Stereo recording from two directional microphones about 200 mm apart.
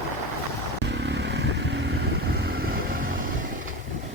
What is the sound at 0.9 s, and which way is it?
Vehicle, 60° right (ahead or behind).